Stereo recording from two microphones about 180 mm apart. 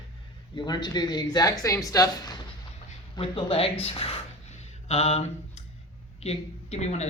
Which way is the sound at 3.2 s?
30° left (ahead or behind).